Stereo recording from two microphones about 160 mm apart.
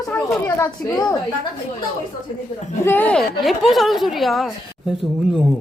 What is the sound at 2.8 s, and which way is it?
A woman's voice, 10° left (ahead or behind).